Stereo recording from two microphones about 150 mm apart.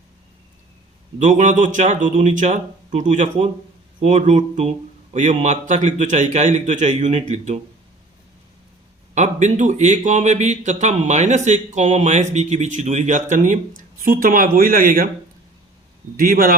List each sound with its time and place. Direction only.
1.2 s a man's voice: 55° right (ahead or behind)
9.1 s speech: 55° right (ahead or behind); by 15.1 s 70° right (ahead or behind)
16.1 s speech: 70° right (ahead or behind)